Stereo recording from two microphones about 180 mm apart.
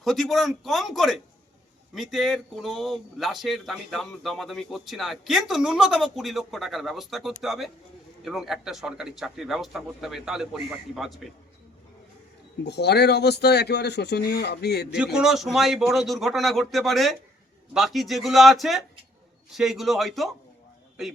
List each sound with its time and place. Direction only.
0.0 s speech: centre (ahead or behind)
12.6 s speech: 65° left (ahead or behind)
14.9 s speech: 5° right (ahead or behind)